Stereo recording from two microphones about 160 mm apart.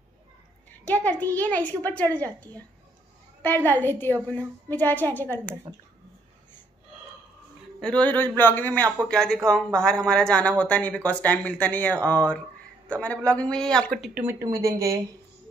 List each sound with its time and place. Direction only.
1.0 s speech: 10° left (ahead or behind)
3.4 s speech: 10° left (ahead or behind)
7.8 s speech: 5° left (ahead or behind)
14.4 s speech: 20° right (ahead or behind)